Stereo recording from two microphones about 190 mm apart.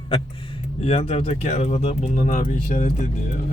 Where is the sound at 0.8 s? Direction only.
30° left (ahead or behind).